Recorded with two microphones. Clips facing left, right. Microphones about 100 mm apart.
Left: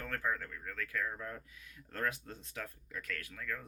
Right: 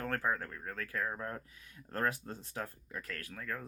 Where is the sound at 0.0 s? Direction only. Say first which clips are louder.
Right 3 dB; 35° right (ahead or behind).